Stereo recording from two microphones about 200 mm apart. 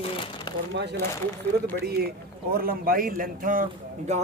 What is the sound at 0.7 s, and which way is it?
Speech, 60° right (ahead or behind).